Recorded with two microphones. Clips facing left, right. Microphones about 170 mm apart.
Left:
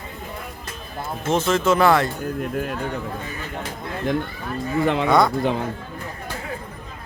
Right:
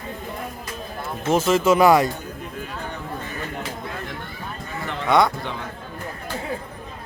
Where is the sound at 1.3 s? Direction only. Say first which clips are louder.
Right 2 dB; 10° right (ahead or behind).